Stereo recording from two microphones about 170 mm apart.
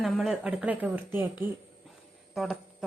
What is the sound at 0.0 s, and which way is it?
Speech, centre (ahead or behind).